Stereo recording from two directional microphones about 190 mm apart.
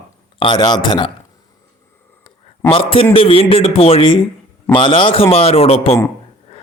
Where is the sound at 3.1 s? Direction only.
30° left (ahead or behind).